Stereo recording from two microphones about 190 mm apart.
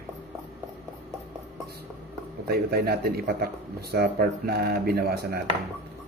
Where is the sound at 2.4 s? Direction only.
55° right (ahead or behind).